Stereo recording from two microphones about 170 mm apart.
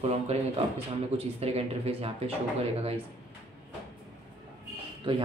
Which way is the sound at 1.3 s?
35° right (ahead or behind).